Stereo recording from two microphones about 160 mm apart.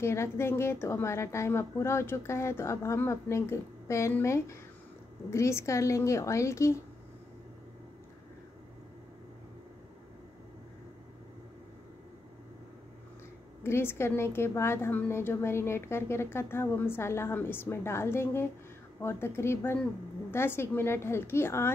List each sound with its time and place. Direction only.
0.0 s a woman's voice: 15° left (ahead or behind)
13.6 s a woman's voice: 15° left (ahead or behind)